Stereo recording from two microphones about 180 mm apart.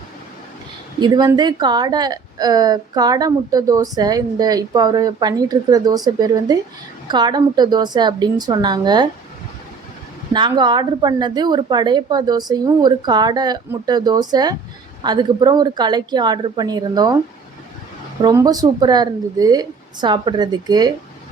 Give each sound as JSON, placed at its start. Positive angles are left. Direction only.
{"t": 0.9, "sound": "a woman's voice", "side_deg": -25}
{"t": 10.3, "sound": "a woman's voice", "side_deg": -25}
{"t": 18.2, "sound": "a woman's voice", "side_deg": -20}